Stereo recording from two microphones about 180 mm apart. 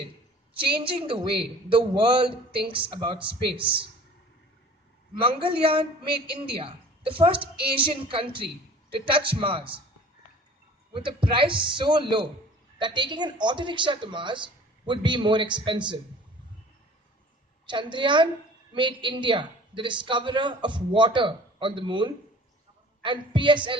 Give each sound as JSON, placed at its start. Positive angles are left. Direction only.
{"t": 0.8, "sound": "a man's voice", "side_deg": -30}
{"t": 5.2, "sound": "a man's voice", "side_deg": -30}
{"t": 10.9, "sound": "a man's voice", "side_deg": -30}
{"t": 17.7, "sound": "a man's voice", "side_deg": -25}